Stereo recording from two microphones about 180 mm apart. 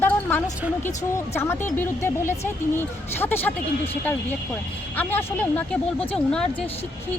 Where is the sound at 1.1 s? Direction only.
15° left (ahead or behind).